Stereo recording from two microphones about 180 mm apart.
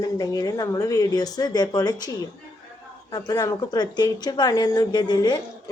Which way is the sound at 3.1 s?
20° left (ahead or behind).